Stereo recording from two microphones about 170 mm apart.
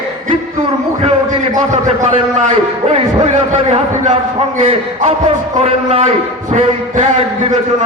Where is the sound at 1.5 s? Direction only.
45° right (ahead or behind).